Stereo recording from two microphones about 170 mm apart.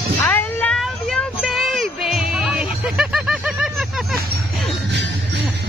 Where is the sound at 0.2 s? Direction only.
10° left (ahead or behind).